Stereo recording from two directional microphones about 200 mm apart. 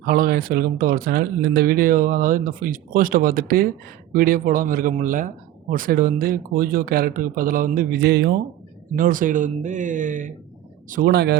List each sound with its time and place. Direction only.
0.0 s speech: 45° right (ahead or behind)
9.0 s speech: 40° right (ahead or behind)